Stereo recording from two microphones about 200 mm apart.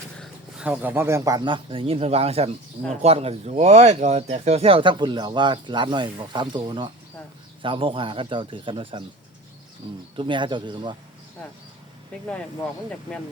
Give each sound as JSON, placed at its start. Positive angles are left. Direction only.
{"t": 0.2, "sound": "speech", "side_deg": -5}